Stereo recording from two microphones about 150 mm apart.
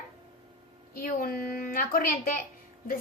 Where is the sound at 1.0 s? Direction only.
70° left (ahead or behind).